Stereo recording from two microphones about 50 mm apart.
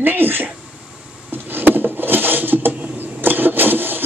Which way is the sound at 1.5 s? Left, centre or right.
Right.